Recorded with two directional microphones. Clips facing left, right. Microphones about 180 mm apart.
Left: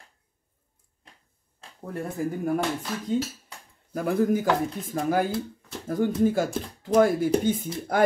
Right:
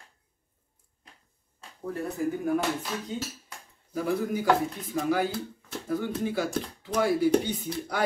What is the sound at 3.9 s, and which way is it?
Speech, 50° left (ahead or behind).